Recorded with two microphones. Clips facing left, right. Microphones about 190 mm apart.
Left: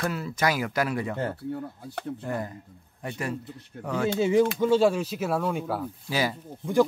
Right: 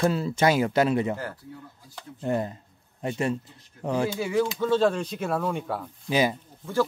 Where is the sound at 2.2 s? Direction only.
25° right (ahead or behind).